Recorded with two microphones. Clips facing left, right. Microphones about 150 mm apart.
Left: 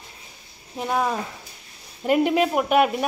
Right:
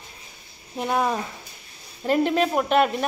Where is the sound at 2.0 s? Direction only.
10° left (ahead or behind).